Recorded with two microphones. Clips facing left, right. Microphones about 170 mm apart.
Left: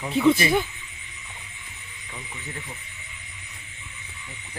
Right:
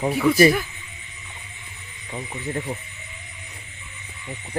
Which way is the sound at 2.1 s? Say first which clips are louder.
Right 10 dB; 45° right (ahead or behind).